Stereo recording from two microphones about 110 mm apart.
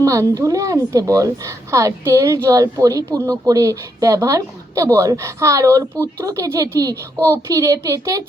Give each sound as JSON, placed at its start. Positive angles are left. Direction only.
{"t": 0.0, "sound": "a woman's voice", "side_deg": -30}